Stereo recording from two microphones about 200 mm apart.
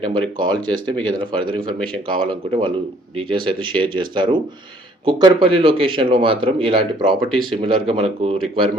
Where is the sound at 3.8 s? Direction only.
25° right (ahead or behind).